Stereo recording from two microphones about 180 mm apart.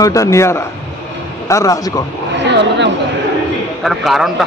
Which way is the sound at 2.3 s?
75° right (ahead or behind).